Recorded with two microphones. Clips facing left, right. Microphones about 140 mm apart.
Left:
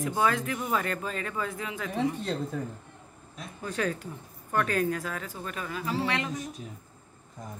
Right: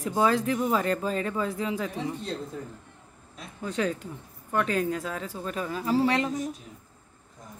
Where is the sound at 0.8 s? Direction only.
30° right (ahead or behind).